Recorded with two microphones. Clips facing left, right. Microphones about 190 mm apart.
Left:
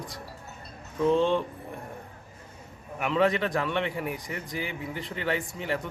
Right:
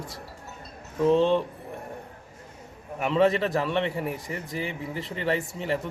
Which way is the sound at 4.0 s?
Centre (ahead or behind).